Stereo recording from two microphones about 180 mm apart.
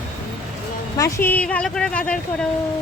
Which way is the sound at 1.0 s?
15° left (ahead or behind).